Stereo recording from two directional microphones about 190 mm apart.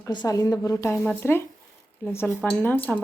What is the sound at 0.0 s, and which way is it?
Speech, 20° left (ahead or behind).